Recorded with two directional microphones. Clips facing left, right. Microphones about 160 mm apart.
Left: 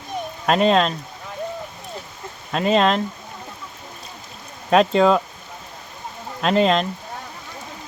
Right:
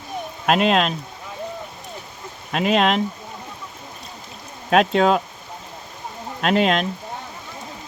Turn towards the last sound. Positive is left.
turn(degrees=-5)  # may be behind; listen again after turning